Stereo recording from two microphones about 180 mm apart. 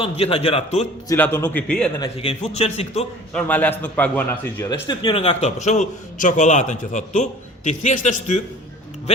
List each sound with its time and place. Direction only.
0.0 s a man's voice: 35° left (ahead or behind)
1.0 s a man's voice: 15° left (ahead or behind)
2.2 s a man's voice: 35° left (ahead or behind)
3.3 s a man's voice: 10° left (ahead or behind)
4.7 s a man's voice: 25° left (ahead or behind); by 8.4 s 40° left (ahead or behind)